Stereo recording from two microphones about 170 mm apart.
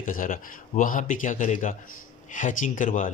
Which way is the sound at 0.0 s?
50° left (ahead or behind).